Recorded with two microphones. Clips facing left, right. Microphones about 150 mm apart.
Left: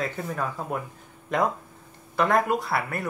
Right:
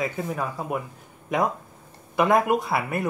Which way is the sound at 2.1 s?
15° right (ahead or behind).